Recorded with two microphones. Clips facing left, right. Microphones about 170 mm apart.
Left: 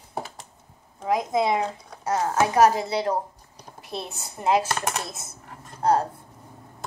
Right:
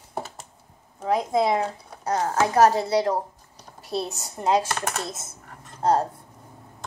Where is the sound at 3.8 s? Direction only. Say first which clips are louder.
Right 5 dB; 35° right (ahead or behind).